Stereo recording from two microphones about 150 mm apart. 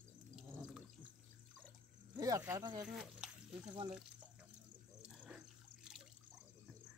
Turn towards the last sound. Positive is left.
turn(degrees=-5)  # may be behind; listen again after turning